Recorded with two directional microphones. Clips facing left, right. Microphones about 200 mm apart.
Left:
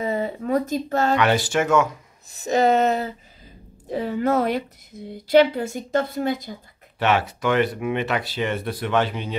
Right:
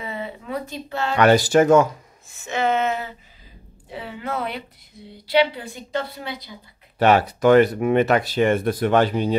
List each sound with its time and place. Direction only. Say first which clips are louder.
0.0 s a sound: left 7 dB; 40° left (ahead or behind)
1.1 s speech: right 8 dB; 40° right (ahead or behind)
2.3 s a woman's voice: left 4 dB; 35° left (ahead or behind)
7.0 s speech: right 5 dB; 40° right (ahead or behind)